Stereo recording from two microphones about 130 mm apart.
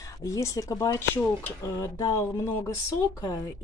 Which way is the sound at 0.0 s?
25° left (ahead or behind).